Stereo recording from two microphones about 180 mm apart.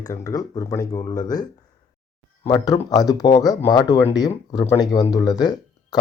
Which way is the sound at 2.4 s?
20° left (ahead or behind).